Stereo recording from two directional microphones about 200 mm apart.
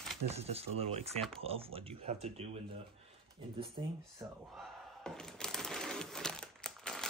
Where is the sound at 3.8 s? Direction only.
25° right (ahead or behind).